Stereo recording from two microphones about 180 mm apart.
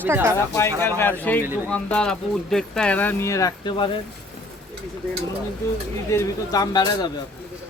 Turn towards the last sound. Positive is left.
turn(degrees=20)  # may be behind; listen again after turning